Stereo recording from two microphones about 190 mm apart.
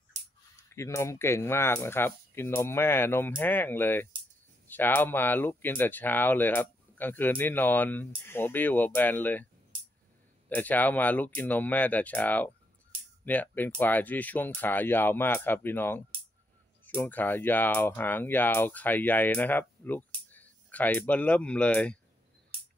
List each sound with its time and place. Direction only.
0.7 s speech: 15° left (ahead or behind)
10.5 s speech: 10° left (ahead or behind)